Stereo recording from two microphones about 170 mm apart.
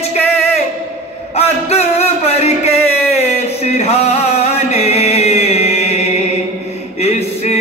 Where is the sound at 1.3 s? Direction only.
40° left (ahead or behind).